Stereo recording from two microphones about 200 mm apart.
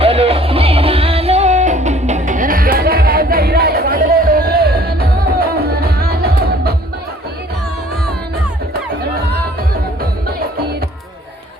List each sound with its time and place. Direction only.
0.0 s music: 30° right (ahead or behind); by 6.7 s 50° right (ahead or behind)